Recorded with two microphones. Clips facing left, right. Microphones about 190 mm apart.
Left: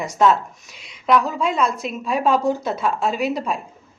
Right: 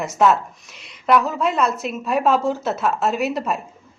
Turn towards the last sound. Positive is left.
turn(degrees=-5)  # may be behind; listen again after turning